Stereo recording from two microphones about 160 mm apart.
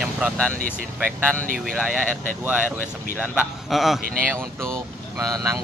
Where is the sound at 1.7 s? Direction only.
Centre (ahead or behind).